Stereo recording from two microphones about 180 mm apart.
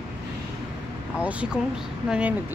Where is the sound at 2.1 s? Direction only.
5° right (ahead or behind).